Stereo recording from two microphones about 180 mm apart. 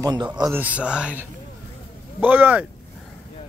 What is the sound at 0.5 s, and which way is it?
Speech, 10° right (ahead or behind).